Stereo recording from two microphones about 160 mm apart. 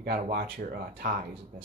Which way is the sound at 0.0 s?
85° right.